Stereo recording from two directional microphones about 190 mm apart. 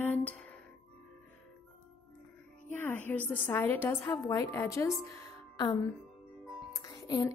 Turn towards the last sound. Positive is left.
turn(degrees=20)  # may be behind; listen again after turning